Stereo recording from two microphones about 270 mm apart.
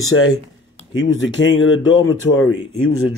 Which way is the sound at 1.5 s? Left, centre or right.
Left.